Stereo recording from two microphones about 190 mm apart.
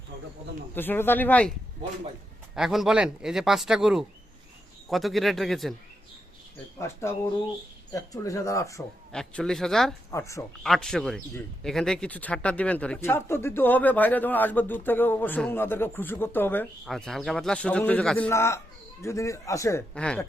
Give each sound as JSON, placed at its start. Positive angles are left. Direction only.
{"t": 0.8, "sound": "speech", "side_deg": 10}
{"t": 2.6, "sound": "a man's voice", "side_deg": 0}
{"t": 6.7, "sound": "speech", "side_deg": 15}
{"t": 9.1, "sound": "a man's voice", "side_deg": 5}
{"t": 10.1, "sound": "speech", "side_deg": 15}
{"t": 10.6, "sound": "a man's voice", "side_deg": 0}
{"t": 19.9, "sound": "a man's voice", "side_deg": 5}